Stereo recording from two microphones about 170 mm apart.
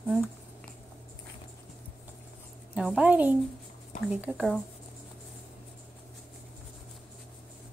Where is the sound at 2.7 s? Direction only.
5° right (ahead or behind).